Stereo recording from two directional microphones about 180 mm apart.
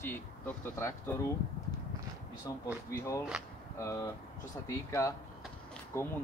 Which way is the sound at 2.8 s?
15° left (ahead or behind).